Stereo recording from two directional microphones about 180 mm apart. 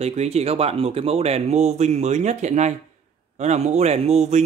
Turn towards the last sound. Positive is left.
turn(degrees=-35)  # may be behind; listen again after turning